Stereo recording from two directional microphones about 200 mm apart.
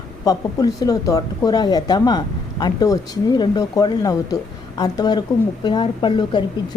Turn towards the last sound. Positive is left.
turn(degrees=25)  # may be behind; listen again after turning